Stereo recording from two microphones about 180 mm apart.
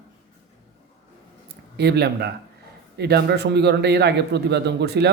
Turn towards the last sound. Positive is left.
turn(degrees=-70)  # may be behind; listen again after turning